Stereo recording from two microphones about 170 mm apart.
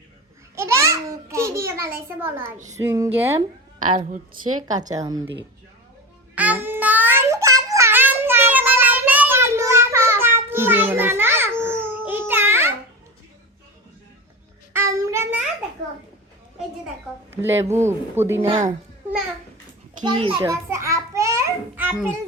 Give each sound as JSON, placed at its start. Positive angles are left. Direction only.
{"t": 0.5, "sound": "a child's voice", "side_deg": -15}
{"t": 4.9, "sound": "a woman's voice", "side_deg": -20}
{"t": 6.3, "sound": "child singing", "side_deg": -10}
{"t": 14.7, "sound": "child singing", "side_deg": -15}
{"t": 17.3, "sound": "speech", "side_deg": -15}
{"t": 18.4, "sound": "a woman's voice", "side_deg": -40}
{"t": 20.1, "sound": "a woman's voice", "side_deg": -30}
{"t": 20.4, "sound": "a sound", "side_deg": -15}